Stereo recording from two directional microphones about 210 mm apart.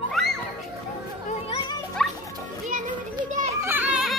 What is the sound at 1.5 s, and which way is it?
Music, 25° left (ahead or behind).